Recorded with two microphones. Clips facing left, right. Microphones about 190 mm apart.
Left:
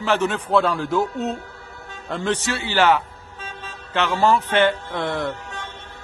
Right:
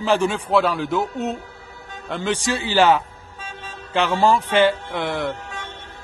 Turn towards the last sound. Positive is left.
turn(degrees=0)  # may be behind; listen again after turning